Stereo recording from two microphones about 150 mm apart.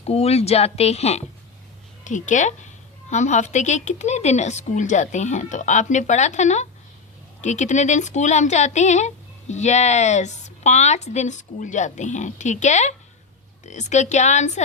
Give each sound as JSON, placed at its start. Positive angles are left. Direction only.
{"t": 0.0, "sound": "speech", "side_deg": 45}
{"t": 2.0, "sound": "a woman's voice", "side_deg": 55}